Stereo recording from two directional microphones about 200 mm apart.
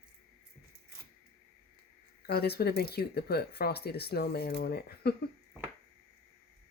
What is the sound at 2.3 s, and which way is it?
Speech, 55° left (ahead or behind).